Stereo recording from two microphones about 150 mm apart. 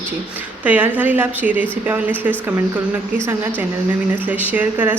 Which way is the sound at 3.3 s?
15° right (ahead or behind).